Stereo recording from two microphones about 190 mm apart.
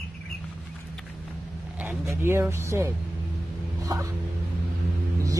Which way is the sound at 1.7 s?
10° right (ahead or behind).